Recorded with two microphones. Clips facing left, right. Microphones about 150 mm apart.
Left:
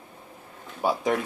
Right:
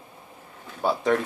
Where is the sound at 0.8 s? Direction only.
10° left (ahead or behind).